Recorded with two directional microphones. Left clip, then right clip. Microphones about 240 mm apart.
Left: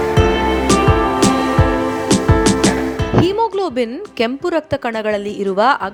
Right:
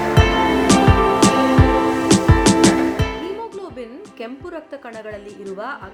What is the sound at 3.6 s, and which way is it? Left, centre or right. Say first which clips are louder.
A woman's voice: left 13 dB; left.